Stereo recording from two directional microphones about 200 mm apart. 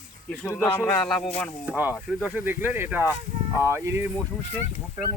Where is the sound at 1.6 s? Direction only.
10° right (ahead or behind).